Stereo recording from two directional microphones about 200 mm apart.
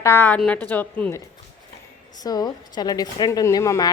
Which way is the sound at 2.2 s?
20° left (ahead or behind).